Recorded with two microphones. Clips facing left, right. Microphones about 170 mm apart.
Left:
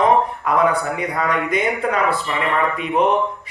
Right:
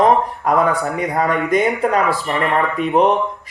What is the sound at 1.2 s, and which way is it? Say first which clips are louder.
Speech: right 5 dB; 45° right (ahead or behind).